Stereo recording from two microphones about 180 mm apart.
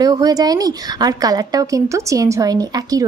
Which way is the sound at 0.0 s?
20° right (ahead or behind).